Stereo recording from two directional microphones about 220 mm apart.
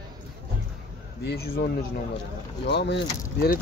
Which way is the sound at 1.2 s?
45° left (ahead or behind).